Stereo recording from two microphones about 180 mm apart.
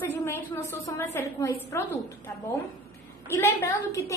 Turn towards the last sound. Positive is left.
turn(degrees=15)  # may be behind; listen again after turning